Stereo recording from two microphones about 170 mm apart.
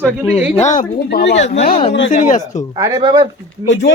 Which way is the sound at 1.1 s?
90° left.